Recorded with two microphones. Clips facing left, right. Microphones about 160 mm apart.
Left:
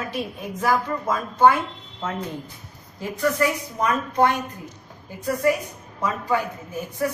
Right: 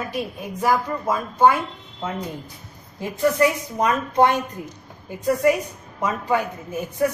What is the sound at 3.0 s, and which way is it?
A woman's voice, 20° right (ahead or behind).